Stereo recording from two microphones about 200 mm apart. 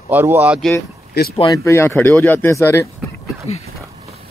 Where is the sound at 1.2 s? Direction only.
55° left (ahead or behind).